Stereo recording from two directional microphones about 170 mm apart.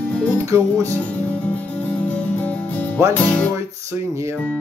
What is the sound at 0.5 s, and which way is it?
Music, 15° right (ahead or behind).